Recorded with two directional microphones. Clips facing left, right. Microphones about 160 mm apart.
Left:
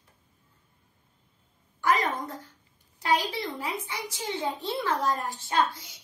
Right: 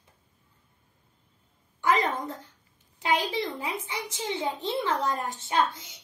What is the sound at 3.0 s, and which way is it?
A child's voice, 20° right (ahead or behind).